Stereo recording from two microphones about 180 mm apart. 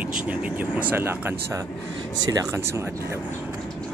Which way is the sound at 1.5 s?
15° right (ahead or behind).